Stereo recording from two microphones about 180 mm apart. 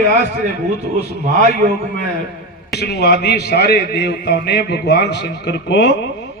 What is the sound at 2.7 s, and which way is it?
A man's voice, 65° left (ahead or behind).